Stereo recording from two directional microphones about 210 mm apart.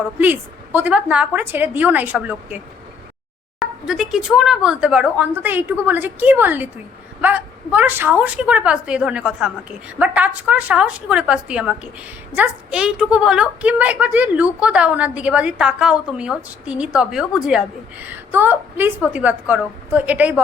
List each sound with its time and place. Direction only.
0.2 s speech: 10° right (ahead or behind)
3.6 s a woman's voice: centre (ahead or behind)